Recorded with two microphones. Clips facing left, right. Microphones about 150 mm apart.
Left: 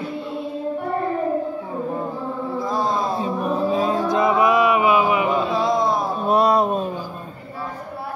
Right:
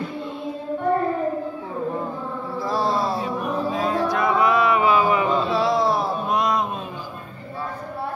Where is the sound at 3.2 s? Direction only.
30° left (ahead or behind).